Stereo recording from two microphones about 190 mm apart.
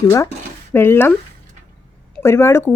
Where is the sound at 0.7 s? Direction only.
10° left (ahead or behind).